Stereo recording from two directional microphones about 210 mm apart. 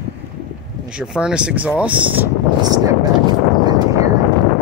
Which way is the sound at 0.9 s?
5° right (ahead or behind).